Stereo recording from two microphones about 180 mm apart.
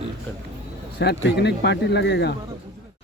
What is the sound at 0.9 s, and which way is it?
Speech, 70° left (ahead or behind).